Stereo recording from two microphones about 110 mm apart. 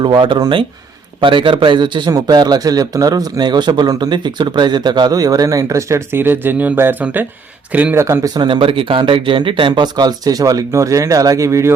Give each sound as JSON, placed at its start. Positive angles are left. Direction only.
{"t": 0.0, "sound": "a man's voice", "side_deg": -45}
{"t": 2.0, "sound": "a man's voice", "side_deg": -35}
{"t": 7.9, "sound": "speech", "side_deg": -25}
{"t": 8.3, "sound": "a man's voice", "side_deg": -40}